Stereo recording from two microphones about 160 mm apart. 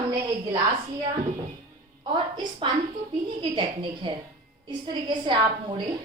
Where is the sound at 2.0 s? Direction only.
30° right (ahead or behind).